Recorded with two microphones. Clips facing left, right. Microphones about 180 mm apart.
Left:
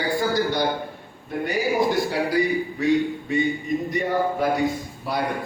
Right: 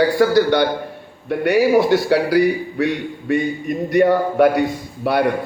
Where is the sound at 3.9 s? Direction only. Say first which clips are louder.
Right 11 dB; 70° right (ahead or behind).